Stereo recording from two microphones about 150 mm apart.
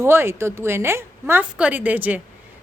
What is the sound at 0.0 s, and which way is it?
A woman's voice, 15° right (ahead or behind).